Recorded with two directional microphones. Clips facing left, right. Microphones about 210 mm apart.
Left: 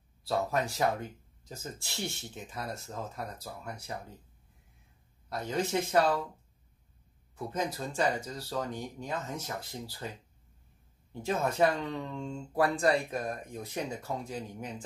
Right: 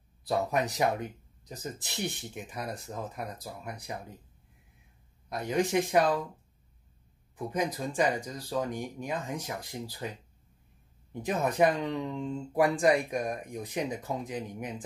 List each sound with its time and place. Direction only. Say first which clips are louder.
0.2 s speech: right 2 dB; 15° right (ahead or behind)
5.3 s speech: right 3 dB; 15° right (ahead or behind)
7.3 s speech: right 3 dB; 15° right (ahead or behind)
11.1 s speech: right 2 dB; 15° right (ahead or behind)